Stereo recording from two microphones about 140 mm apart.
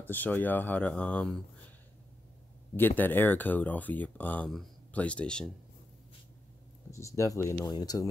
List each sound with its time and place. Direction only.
0.0 s speech: 15° left (ahead or behind)
3.0 s speech: 15° left (ahead or behind)
6.9 s speech: 20° left (ahead or behind)